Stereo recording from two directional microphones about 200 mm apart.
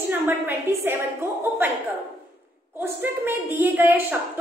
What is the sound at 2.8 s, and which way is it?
A woman's voice, 10° right (ahead or behind).